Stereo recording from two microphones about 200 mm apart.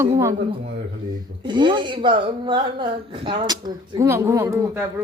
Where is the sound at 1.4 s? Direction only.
25° right (ahead or behind).